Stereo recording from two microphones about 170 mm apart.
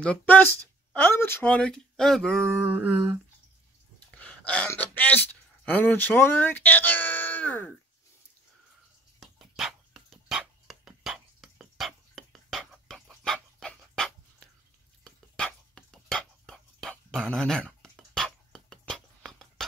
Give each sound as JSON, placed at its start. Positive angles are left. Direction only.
{"t": 0.0, "sound": "speech", "side_deg": 10}
{"t": 2.6, "sound": "humming", "side_deg": -10}
{"t": 4.1, "sound": "speech", "side_deg": 5}
{"t": 9.2, "sound": "dog", "side_deg": 0}
{"t": 15.0, "sound": "whispering", "side_deg": 5}